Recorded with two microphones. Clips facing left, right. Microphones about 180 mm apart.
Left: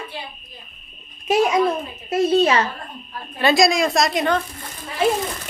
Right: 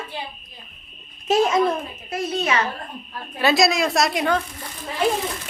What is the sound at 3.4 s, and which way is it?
A woman's voice, 5° right (ahead or behind).